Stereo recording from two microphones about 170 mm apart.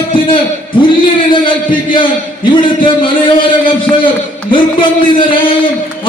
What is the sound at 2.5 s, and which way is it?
A man's voice, 30° left (ahead or behind).